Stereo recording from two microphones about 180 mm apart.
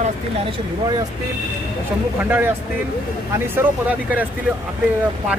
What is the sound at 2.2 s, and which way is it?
Speech, 10° right (ahead or behind).